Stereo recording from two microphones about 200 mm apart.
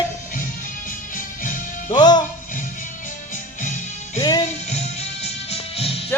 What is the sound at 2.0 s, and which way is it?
Speech, 20° left (ahead or behind).